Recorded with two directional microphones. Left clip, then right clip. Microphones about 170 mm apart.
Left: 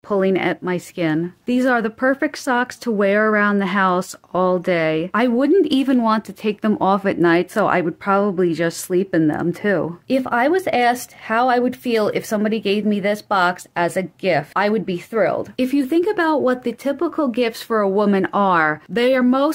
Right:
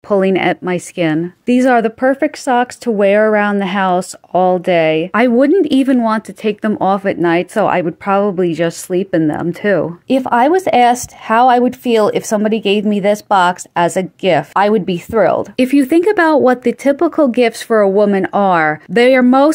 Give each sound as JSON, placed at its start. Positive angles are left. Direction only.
{"t": 0.1, "sound": "speech", "side_deg": -30}
{"t": 15.5, "sound": "speech", "side_deg": -40}
{"t": 17.9, "sound": "speech", "side_deg": -20}